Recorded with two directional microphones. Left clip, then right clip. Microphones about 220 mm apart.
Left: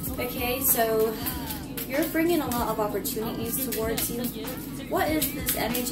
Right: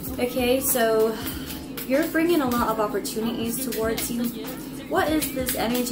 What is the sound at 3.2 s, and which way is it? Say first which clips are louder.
Speech: right 3 dB; centre (ahead or behind).